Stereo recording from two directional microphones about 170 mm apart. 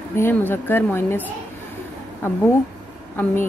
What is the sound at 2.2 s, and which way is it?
Speech, 15° left (ahead or behind).